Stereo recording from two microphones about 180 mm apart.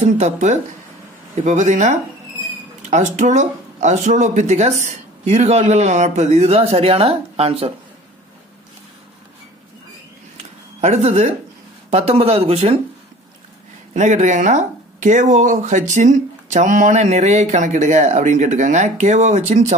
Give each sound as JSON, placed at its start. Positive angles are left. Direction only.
{"t": 0.0, "sound": "speech", "side_deg": -40}
{"t": 10.3, "sound": "a sound", "side_deg": -35}
{"t": 11.9, "sound": "speech", "side_deg": -35}
{"t": 13.9, "sound": "speech", "side_deg": -40}